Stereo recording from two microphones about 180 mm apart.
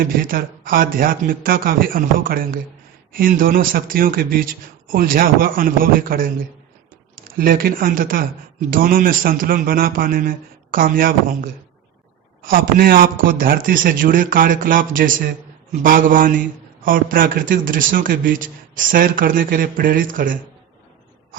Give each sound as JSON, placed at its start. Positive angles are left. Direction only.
{"t": 0.0, "sound": "a man's voice", "side_deg": -50}
{"t": 12.5, "sound": "a man's voice", "side_deg": -55}